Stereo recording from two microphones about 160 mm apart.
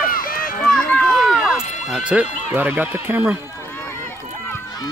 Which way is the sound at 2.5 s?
10° right (ahead or behind).